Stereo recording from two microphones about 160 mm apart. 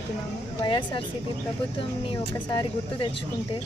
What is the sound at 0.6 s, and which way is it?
Speech, 30° left (ahead or behind).